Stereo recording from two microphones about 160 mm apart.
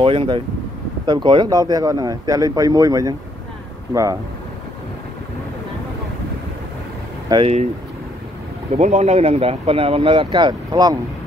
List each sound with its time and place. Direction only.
0.0 s speech: 35° right (ahead or behind)
7.3 s speech: 25° right (ahead or behind)
8.7 s speech: 45° right (ahead or behind); by 11.0 s 25° right (ahead or behind)